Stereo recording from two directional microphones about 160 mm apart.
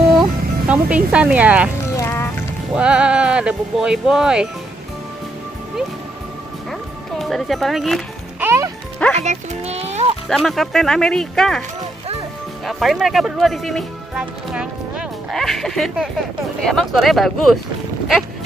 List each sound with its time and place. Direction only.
0.2 s speech: 5° right (ahead or behind)
2.0 s music: 15° left (ahead or behind)
2.7 s speech: 5° right (ahead or behind)
7.2 s speech: centre (ahead or behind)
8.4 s music: 15° right (ahead or behind)
9.2 s speech: 45° right (ahead or behind)
10.3 s speech: centre (ahead or behind)
12.6 s speech: centre (ahead or behind)